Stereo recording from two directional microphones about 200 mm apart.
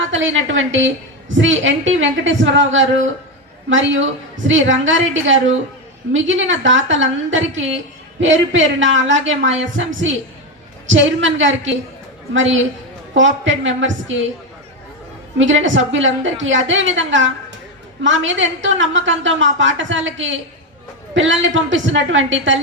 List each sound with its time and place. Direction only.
0.1 s a woman's voice: 70° right (ahead or behind)
15.6 s a woman's voice: 70° right (ahead or behind)